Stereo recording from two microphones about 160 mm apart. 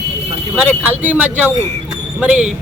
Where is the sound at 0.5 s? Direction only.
10° right (ahead or behind).